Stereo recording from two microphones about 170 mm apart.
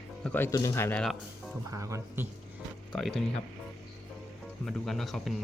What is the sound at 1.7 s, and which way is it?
Speech, 20° right (ahead or behind).